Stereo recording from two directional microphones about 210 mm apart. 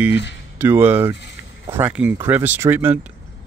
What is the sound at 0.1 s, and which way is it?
Speech, 55° left (ahead or behind).